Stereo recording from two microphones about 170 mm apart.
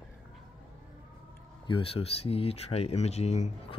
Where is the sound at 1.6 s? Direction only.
30° left (ahead or behind).